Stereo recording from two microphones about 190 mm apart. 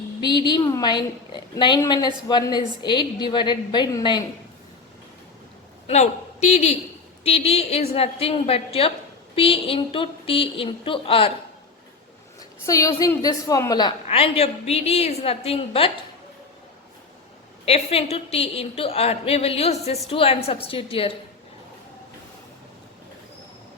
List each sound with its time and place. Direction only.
0.2 s a woman's voice: 25° left (ahead or behind)
5.9 s a woman's voice: 35° left (ahead or behind)
12.6 s a woman's voice: 15° left (ahead or behind)
17.7 s a woman's voice: 35° left (ahead or behind)